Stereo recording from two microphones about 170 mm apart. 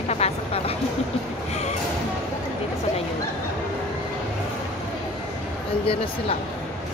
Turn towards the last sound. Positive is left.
turn(degrees=35)  # may be behind; listen again after turning